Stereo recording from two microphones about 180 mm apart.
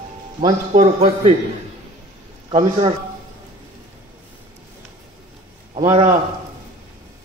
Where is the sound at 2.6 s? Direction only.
35° right (ahead or behind).